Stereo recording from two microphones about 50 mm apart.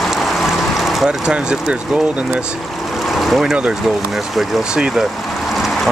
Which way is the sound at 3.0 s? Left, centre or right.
Centre.